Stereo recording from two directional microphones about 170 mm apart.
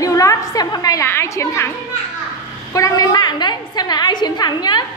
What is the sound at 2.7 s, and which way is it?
A woman's voice, 20° left (ahead or behind).